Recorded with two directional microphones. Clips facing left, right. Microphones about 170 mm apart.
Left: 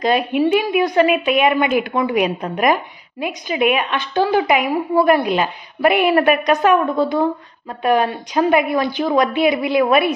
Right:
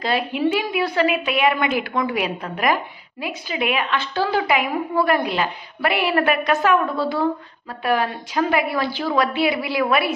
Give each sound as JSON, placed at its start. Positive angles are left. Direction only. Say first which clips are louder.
{"t": 0.0, "sound": "a woman's voice", "louder": "left 5 dB", "side_deg": 20}